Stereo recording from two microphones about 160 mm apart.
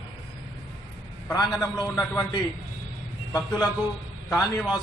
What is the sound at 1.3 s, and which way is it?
A man's voice, 25° left (ahead or behind).